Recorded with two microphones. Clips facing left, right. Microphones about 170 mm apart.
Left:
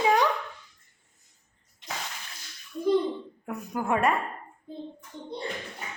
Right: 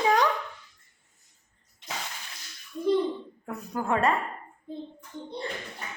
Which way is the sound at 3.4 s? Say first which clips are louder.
Left 1 dB; 15° left (ahead or behind).